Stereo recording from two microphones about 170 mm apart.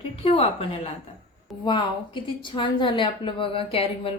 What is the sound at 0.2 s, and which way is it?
A woman's voice, 35° left (ahead or behind).